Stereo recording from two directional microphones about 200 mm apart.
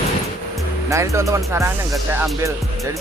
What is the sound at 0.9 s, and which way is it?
Speech, 15° right (ahead or behind).